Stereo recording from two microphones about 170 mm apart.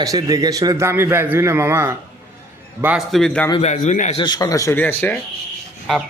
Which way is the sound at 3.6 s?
45° left (ahead or behind).